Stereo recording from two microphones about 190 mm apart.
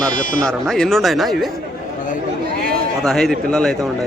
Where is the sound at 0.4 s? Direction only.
5° left (ahead or behind).